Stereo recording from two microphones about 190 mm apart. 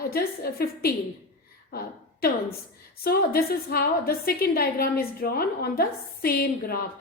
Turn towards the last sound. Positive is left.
turn(degrees=50)  # may be behind; listen again after turning